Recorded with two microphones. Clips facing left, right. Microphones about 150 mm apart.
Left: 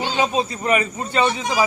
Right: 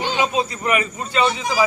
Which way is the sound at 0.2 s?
30° left (ahead or behind).